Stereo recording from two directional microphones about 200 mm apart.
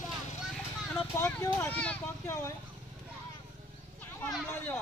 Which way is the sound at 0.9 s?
10° left (ahead or behind).